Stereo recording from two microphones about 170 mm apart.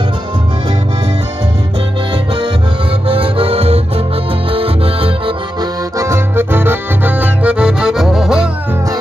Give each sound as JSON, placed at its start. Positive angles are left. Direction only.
{"t": 3.1, "sound": "music", "side_deg": -35}
{"t": 4.5, "sound": "accordion", "side_deg": -35}
{"t": 5.9, "sound": "accordion", "side_deg": -15}